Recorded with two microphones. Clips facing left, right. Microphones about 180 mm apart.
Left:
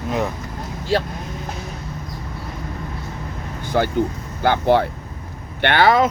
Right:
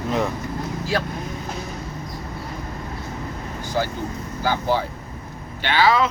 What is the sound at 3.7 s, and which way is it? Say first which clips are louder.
Speech: left 6 dB; 60° left (ahead or behind).